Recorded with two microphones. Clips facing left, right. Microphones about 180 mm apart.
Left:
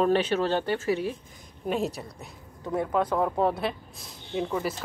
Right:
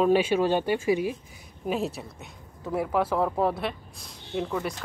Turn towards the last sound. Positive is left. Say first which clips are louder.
# left 1 dB
turn(degrees=0)  # may be behind; listen again after turning